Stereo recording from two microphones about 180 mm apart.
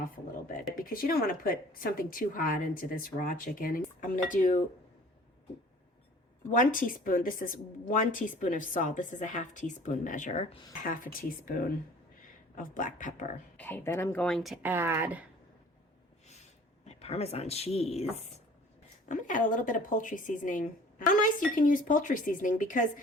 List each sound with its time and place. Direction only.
0.0 s a sound: 50° left (ahead or behind)
0.8 s a woman's voice: 50° left (ahead or behind)
6.5 s a woman's voice: 50° left (ahead or behind); by 10.7 s 30° left (ahead or behind)
10.8 s a woman's voice: 50° left (ahead or behind)
13.6 s speech: 10° left (ahead or behind); by 15.3 s 10° right (ahead or behind)
16.8 s a woman's voice: 35° left (ahead or behind)